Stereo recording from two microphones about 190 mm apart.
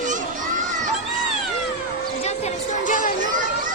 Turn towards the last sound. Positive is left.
turn(degrees=45)  # may be behind; listen again after turning